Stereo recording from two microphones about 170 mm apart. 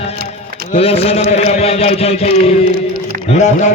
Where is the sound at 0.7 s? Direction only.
35° left (ahead or behind).